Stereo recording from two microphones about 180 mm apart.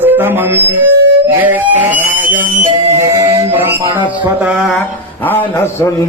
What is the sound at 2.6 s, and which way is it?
Music, 40° right (ahead or behind).